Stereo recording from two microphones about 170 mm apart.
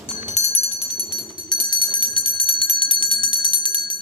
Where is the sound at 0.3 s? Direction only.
40° left (ahead or behind).